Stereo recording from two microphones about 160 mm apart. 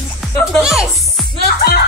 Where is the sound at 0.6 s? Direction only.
Centre (ahead or behind).